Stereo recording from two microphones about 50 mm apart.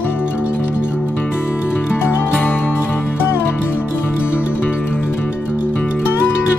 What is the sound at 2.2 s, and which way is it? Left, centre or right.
Music, left.